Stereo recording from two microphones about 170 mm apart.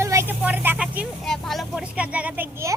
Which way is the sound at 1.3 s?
Centre (ahead or behind).